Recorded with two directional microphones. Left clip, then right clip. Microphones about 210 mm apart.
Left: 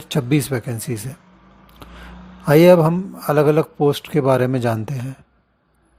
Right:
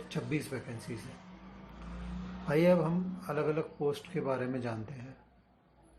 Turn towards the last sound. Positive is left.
turn(degrees=50)  # may be behind; listen again after turning